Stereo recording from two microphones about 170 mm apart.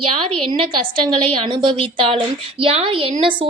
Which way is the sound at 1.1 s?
30° right (ahead or behind).